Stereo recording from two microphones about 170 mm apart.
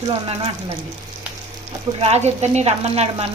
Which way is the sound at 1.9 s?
35° right (ahead or behind).